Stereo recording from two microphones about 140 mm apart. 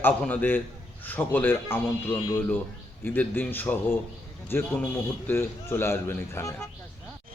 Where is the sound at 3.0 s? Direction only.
10° left (ahead or behind).